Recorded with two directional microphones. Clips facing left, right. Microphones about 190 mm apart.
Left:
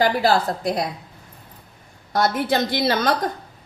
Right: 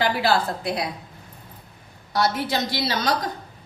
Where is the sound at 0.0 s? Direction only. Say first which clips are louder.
Left 3 dB; 45° left (ahead or behind).